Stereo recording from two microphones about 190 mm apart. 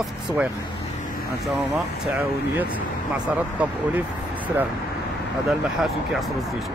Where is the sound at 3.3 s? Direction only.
5° right (ahead or behind).